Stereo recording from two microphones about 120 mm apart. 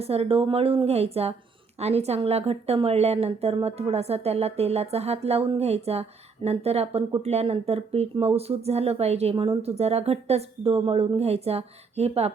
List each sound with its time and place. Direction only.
0.0 s a woman's voice: 55° right (ahead or behind)